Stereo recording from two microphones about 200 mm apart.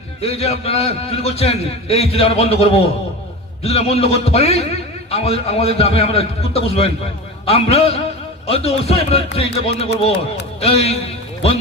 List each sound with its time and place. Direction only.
0.2 s a man's voice: 30° left (ahead or behind)